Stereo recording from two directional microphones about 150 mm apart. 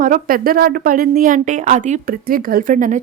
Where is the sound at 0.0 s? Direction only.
70° right (ahead or behind).